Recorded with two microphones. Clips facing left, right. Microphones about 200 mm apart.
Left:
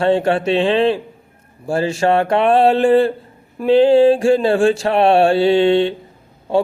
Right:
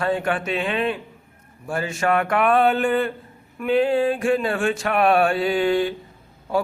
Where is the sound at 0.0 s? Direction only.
30° left (ahead or behind).